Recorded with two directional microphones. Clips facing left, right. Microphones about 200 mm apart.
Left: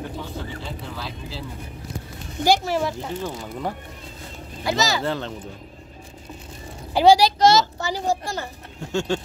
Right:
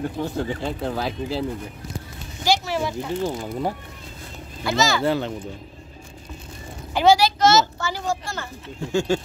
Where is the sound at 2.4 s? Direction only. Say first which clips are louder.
Left 3 dB; 50° left (ahead or behind).